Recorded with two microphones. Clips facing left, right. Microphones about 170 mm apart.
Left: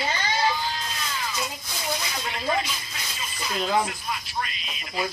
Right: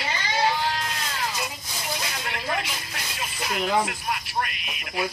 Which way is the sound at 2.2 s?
60° right (ahead or behind).